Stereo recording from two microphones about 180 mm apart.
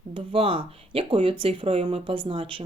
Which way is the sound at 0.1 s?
30° right (ahead or behind).